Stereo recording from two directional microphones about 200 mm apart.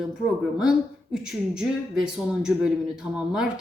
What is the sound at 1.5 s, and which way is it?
A woman's voice, 5° right (ahead or behind).